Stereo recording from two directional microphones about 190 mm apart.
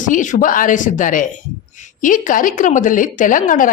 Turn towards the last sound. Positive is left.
turn(degrees=45)  # may be behind; listen again after turning